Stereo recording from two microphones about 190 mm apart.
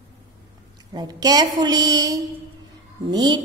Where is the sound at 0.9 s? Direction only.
20° right (ahead or behind).